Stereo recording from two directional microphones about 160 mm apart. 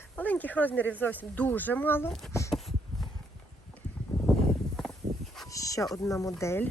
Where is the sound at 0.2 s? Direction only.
10° left (ahead or behind).